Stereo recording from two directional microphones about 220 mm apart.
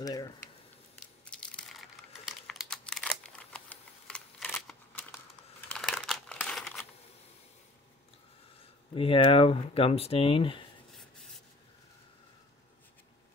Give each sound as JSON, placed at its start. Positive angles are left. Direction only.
{"t": 0.0, "sound": "speech", "side_deg": 15}
{"t": 1.2, "sound": "computer keyboard", "side_deg": 5}
{"t": 5.7, "sound": "crumpling", "side_deg": 0}
{"t": 8.9, "sound": "speech", "side_deg": 25}
{"t": 10.9, "sound": "rub", "side_deg": 0}